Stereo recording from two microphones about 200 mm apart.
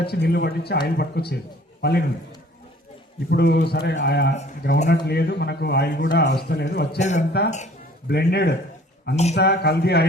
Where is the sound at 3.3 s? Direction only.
55° left (ahead or behind).